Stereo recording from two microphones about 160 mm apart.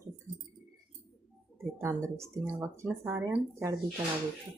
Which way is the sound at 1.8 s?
15° right (ahead or behind).